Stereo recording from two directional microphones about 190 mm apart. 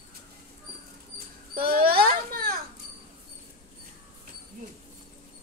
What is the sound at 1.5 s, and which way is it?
A child's voice, 50° right (ahead or behind).